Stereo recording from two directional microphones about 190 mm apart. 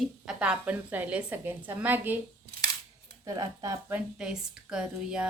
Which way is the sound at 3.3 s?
15° right (ahead or behind).